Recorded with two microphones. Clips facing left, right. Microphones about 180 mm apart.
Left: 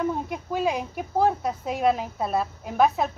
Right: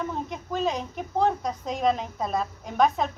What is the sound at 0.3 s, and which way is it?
A woman's voice, 10° left (ahead or behind).